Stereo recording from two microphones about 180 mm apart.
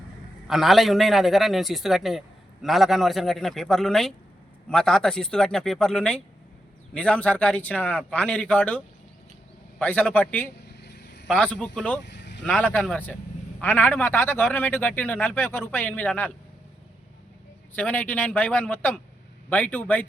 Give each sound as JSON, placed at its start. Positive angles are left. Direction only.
{"t": 0.4, "sound": "a man's voice", "side_deg": 0}
{"t": 10.8, "sound": "vehicle", "side_deg": 65}
{"t": 11.3, "sound": "a man's voice", "side_deg": 5}
{"t": 12.0, "sound": "vehicle", "side_deg": 75}
{"t": 12.5, "sound": "a man's voice", "side_deg": 5}
{"t": 17.7, "sound": "a man's voice", "side_deg": 10}